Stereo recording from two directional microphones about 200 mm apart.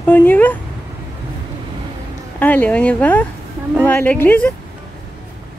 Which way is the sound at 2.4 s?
5° left (ahead or behind).